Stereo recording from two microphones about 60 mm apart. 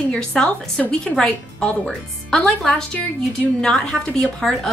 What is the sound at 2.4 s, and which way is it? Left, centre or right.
A woman's voice, centre.